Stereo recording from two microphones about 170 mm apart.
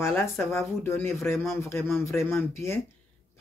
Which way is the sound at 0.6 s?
15° left (ahead or behind).